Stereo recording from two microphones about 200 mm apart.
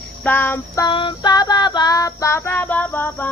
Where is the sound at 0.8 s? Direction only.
25° left (ahead or behind).